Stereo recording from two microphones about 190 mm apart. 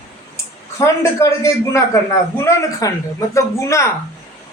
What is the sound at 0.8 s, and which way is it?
Speech, 15° left (ahead or behind).